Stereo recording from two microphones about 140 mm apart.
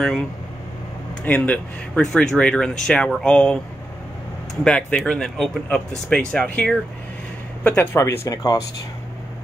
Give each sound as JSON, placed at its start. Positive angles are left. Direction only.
{"t": 1.2, "sound": "speech", "side_deg": 10}
{"t": 4.6, "sound": "speech", "side_deg": 10}